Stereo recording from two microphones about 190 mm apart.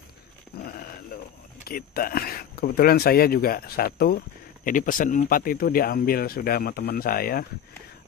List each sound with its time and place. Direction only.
1.7 s speech: 50° left (ahead or behind)